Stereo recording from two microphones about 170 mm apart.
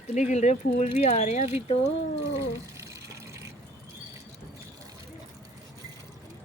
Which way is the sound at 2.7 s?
20° right (ahead or behind).